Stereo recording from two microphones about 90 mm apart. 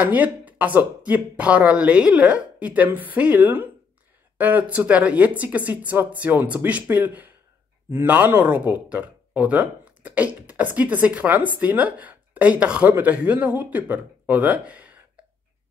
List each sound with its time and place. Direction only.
0.0 s speech: 20° right (ahead or behind)